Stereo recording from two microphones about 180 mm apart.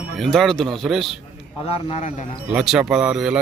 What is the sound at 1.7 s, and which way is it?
Speech, 35° left (ahead or behind).